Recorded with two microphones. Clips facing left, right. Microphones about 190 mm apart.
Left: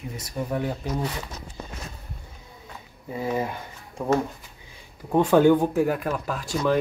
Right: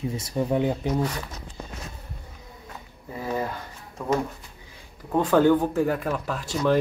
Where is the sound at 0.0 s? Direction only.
25° right (ahead or behind).